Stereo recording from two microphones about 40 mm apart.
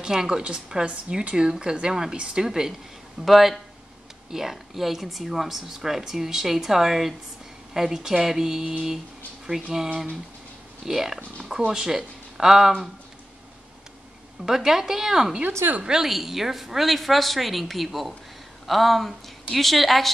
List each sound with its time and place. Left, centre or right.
0.0 s a woman's voice: centre
1.3 s speech: centre
3.2 s a woman's voice: centre
10.9 s speech: centre
14.4 s speech: centre
15.4 s speech: right
15.8 s speech: centre
16.1 s a woman's voice: centre